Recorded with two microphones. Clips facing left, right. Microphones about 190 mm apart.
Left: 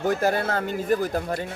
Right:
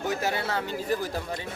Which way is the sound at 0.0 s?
50° left (ahead or behind).